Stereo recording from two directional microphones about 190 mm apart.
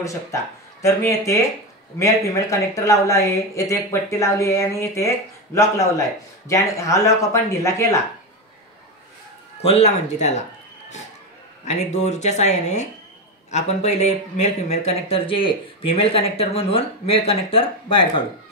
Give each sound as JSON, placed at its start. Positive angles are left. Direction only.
{"t": 0.0, "sound": "speech", "side_deg": 15}
{"t": 9.6, "sound": "speech", "side_deg": 35}
{"t": 11.6, "sound": "speech", "side_deg": 35}